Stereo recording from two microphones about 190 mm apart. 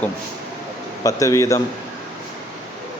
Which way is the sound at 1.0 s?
15° left (ahead or behind).